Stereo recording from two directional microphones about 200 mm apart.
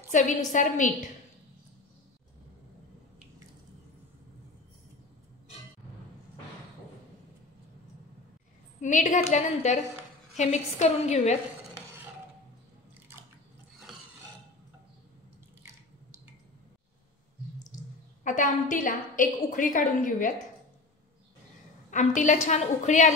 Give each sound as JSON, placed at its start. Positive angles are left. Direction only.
{"t": 0.1, "sound": "a woman's voice", "side_deg": 40}
{"t": 8.8, "sound": "a woman's voice", "side_deg": 40}
{"t": 18.2, "sound": "a woman's voice", "side_deg": 40}
{"t": 21.9, "sound": "a woman's voice", "side_deg": 40}